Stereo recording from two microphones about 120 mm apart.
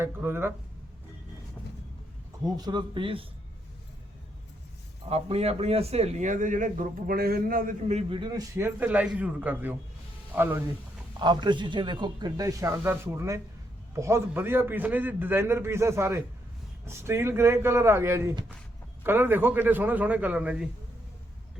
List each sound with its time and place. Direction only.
0.0 s a man's voice: 20° right (ahead or behind)
2.4 s a man's voice: 35° right (ahead or behind)
5.0 s a man's voice: 60° right (ahead or behind); by 6.8 s 90° right
7.7 s a man's voice: 65° right (ahead or behind)
8.1 s a man's voice: 35° right (ahead or behind)
8.5 s a man's voice: 15° right (ahead or behind)
11.2 s a man's voice: 40° right (ahead or behind); by 20.7 s 10° right (ahead or behind)